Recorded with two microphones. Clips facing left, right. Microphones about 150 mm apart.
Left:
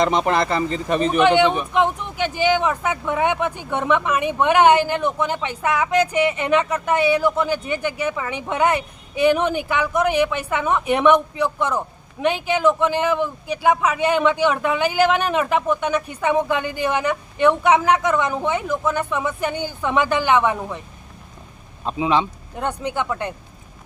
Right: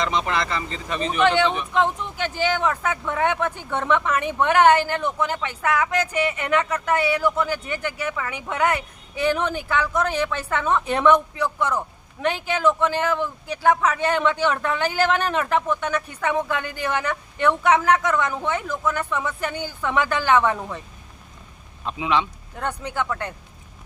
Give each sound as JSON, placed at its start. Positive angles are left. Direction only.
{"t": 0.0, "sound": "speech", "side_deg": 50}
{"t": 1.2, "sound": "speech", "side_deg": 15}
{"t": 21.8, "sound": "speech", "side_deg": 30}
{"t": 22.5, "sound": "speech", "side_deg": 20}